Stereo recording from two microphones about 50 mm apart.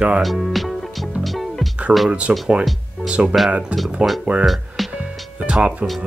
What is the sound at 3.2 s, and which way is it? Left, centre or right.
Speech, right.